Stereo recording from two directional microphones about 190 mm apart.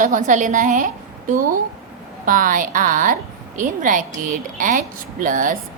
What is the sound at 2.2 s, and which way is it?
A woman's voice, 45° right (ahead or behind).